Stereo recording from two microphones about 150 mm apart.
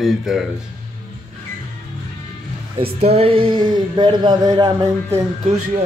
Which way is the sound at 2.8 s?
40° right (ahead or behind).